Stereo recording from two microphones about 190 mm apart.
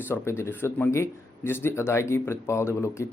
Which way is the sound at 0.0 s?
10° left (ahead or behind).